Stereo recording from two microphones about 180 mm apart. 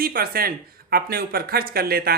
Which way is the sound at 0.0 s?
55° right (ahead or behind).